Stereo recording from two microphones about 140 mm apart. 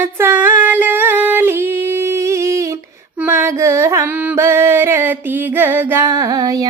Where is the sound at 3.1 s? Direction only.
10° right (ahead or behind).